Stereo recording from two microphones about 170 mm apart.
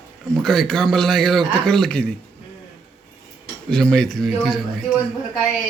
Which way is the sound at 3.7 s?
5° left (ahead or behind).